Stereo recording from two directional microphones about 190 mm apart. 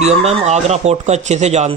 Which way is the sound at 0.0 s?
35° right (ahead or behind).